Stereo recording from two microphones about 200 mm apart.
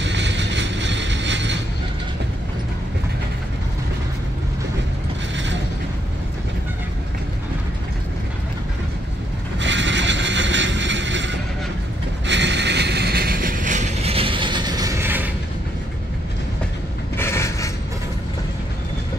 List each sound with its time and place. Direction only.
0.0 s vehicle: 60° right (ahead or behind)
9.6 s a sound: 65° right (ahead or behind)
12.3 s vehicle: 60° right (ahead or behind); by 15.2 s 10° right (ahead or behind)
17.2 s mechanisms: 15° left (ahead or behind)